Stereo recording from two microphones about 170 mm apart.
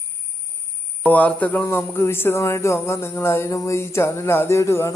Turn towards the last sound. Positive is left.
turn(degrees=15)  # may be behind; listen again after turning